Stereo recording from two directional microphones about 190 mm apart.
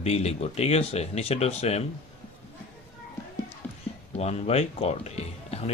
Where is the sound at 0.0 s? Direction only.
35° left (ahead or behind).